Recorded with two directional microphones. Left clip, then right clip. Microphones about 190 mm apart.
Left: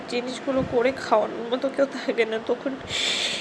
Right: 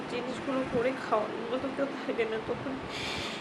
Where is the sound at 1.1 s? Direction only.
35° left (ahead or behind).